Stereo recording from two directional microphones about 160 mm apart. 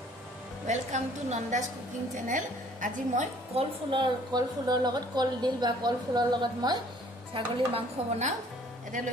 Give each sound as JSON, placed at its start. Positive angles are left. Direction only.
{"t": 0.7, "sound": "a woman's voice", "side_deg": -45}
{"t": 3.5, "sound": "a woman's voice", "side_deg": -30}
{"t": 7.3, "sound": "speech", "side_deg": -35}
{"t": 8.9, "sound": "a woman's voice", "side_deg": -55}